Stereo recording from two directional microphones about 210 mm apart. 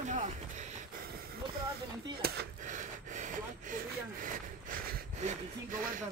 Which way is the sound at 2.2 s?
40° right (ahead or behind).